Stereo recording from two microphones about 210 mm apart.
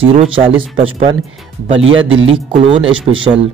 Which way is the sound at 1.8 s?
70° right (ahead or behind).